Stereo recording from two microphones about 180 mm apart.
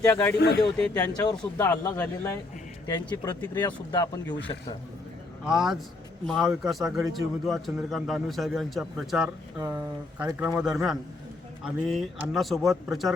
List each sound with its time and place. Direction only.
0.0 s speech: 10° left (ahead or behind)
0.3 s speech: 70° left (ahead or behind)
0.9 s speech: 20° left (ahead or behind)
5.5 s speech: centre (ahead or behind)
10.4 s speech: 5° right (ahead or behind)